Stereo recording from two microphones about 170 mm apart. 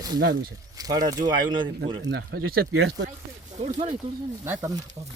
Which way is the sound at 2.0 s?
75° right (ahead or behind).